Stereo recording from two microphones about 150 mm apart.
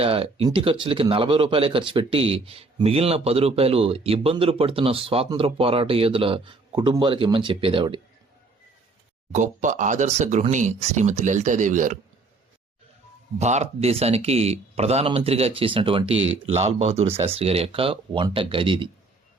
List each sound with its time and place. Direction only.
0.0 s speech: 40° right (ahead or behind)
9.3 s speech: 55° right (ahead or behind)
13.4 s speech: 50° right (ahead or behind)